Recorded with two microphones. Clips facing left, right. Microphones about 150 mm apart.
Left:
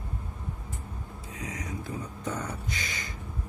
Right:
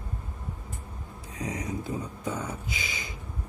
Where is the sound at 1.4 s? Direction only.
30° right (ahead or behind).